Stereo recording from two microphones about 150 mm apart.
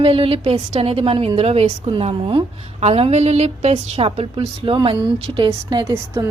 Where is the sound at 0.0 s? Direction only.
40° right (ahead or behind).